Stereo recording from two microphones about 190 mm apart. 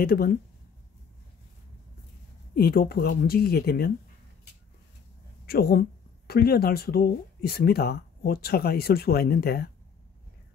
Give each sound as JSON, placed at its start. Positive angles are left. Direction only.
{"t": 0.0, "sound": "speech", "side_deg": 50}
{"t": 2.5, "sound": "speech", "side_deg": 55}
{"t": 5.5, "sound": "speech", "side_deg": 55}